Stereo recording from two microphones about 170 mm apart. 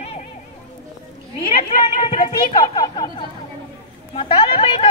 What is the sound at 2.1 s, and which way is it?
A woman's voice, 30° left (ahead or behind).